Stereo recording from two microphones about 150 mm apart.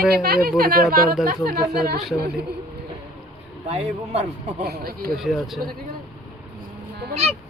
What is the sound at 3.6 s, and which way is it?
Speech, 45° right (ahead or behind).